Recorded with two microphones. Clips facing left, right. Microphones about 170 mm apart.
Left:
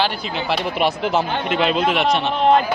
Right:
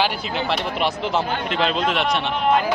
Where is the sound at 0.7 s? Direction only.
10° left (ahead or behind).